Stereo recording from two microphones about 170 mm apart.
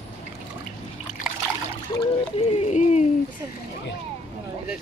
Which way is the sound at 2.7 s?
45° left (ahead or behind).